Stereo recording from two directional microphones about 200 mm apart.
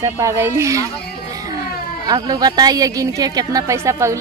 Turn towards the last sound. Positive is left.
turn(degrees=-15)  # may be behind; listen again after turning